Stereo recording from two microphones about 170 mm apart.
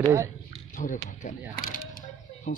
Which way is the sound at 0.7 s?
50° left (ahead or behind).